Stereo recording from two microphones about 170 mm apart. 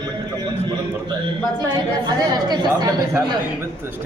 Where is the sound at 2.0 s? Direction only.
25° right (ahead or behind).